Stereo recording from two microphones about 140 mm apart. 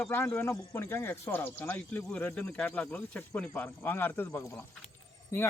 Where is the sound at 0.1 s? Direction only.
15° left (ahead or behind).